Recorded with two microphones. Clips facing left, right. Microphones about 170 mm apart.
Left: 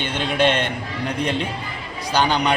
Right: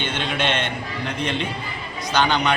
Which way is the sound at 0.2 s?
40° left (ahead or behind).